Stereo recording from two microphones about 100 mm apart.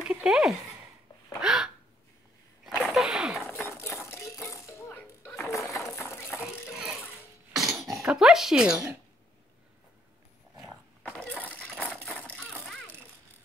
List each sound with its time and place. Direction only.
0.0 s a sound: 5° right (ahead or behind)
3.4 s rattle: 25° left (ahead or behind)
6.7 s sewing machine: 5° right (ahead or behind)
7.5 s throat clearing: centre (ahead or behind)
11.2 s rattle: 15° left (ahead or behind)